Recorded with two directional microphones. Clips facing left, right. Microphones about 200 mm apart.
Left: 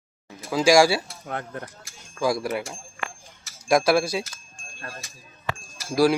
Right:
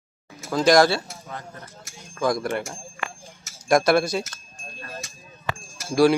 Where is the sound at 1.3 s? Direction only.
65° left (ahead or behind).